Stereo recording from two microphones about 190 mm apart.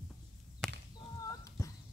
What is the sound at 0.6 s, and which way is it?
Whip, centre (ahead or behind).